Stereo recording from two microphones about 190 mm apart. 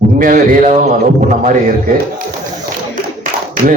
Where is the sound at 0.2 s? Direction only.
45° right (ahead or behind).